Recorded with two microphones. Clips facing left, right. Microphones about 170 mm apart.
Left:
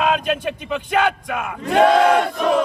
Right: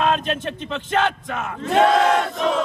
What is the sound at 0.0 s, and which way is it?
Battle cry, 5° left (ahead or behind).